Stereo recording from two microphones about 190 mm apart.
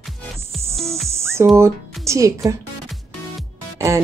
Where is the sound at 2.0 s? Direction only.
15° right (ahead or behind).